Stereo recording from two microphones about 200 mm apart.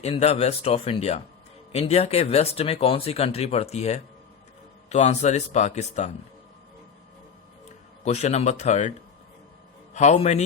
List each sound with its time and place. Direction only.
0.0 s speech: 30° left (ahead or behind)
8.0 s speech: 35° left (ahead or behind)
9.9 s speech: 35° left (ahead or behind)